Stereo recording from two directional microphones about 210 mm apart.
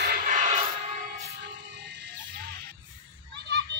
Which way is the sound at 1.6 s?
55° right (ahead or behind).